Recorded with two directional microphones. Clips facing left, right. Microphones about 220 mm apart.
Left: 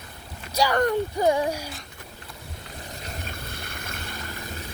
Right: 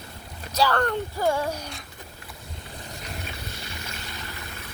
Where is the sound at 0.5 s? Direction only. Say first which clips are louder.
Left 2 dB; 15° left (ahead or behind).